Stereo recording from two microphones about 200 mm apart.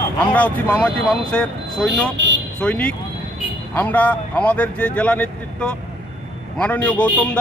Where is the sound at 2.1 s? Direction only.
65° right (ahead or behind).